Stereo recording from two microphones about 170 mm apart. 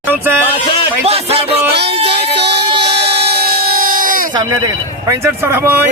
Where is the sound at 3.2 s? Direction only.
65° right (ahead or behind).